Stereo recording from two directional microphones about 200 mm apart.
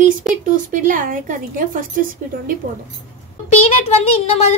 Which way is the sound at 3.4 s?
30° left (ahead or behind).